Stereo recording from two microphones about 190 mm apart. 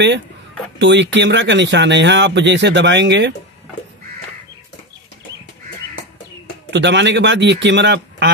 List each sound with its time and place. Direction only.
0.7 s speech: 70° right (ahead or behind)
6.7 s speech: 65° right (ahead or behind)